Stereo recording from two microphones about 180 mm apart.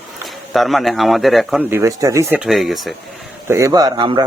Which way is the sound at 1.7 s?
15° right (ahead or behind).